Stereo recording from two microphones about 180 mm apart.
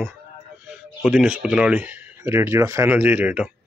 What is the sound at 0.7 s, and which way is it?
Speech, 5° right (ahead or behind).